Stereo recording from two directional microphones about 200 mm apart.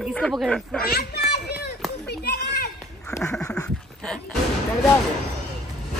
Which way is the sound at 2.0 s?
55° left (ahead or behind).